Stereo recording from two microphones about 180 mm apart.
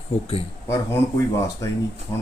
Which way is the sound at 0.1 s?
35° left (ahead or behind).